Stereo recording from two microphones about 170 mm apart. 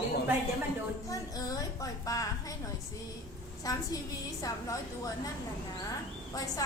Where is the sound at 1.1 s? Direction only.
20° left (ahead or behind).